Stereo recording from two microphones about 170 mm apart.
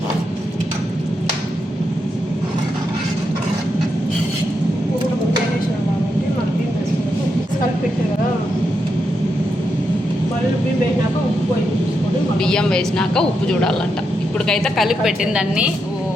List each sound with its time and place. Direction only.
12.4 s a woman's voice: 5° left (ahead or behind)